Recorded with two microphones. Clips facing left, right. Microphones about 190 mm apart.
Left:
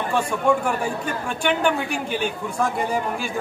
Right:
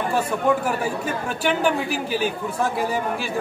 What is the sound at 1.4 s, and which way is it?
A man's voice, 5° right (ahead or behind).